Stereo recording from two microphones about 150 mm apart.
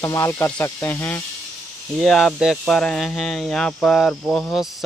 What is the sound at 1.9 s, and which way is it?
Speech, centre (ahead or behind).